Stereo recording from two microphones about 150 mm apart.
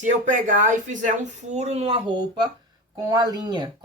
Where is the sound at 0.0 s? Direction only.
60° right (ahead or behind).